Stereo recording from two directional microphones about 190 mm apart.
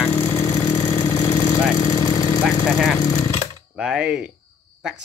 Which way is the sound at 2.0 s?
20° left (ahead or behind).